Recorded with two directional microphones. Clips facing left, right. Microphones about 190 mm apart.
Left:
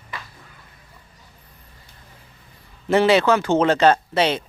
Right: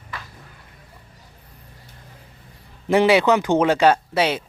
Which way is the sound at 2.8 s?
15° right (ahead or behind).